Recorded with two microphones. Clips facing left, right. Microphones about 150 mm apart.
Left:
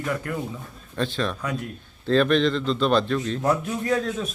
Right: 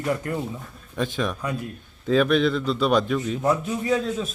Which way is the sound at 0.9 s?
15° right (ahead or behind).